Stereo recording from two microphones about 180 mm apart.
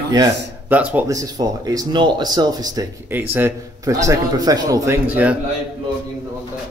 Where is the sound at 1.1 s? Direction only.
20° right (ahead or behind).